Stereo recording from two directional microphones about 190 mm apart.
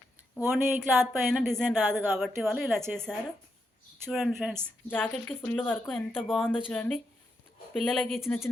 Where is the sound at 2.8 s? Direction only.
10° right (ahead or behind).